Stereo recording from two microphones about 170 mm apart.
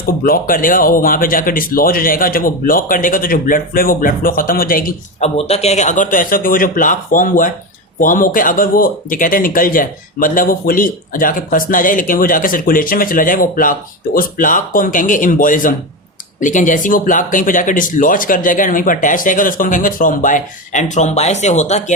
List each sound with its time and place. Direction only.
0.3 s speech: 55° left (ahead or behind)
5.2 s speech: 40° left (ahead or behind)